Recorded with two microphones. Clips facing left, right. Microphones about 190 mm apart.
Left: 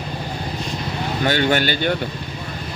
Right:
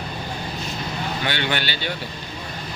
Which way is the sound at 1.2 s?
45° left (ahead or behind).